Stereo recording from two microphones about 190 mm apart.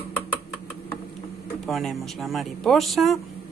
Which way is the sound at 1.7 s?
Centre (ahead or behind).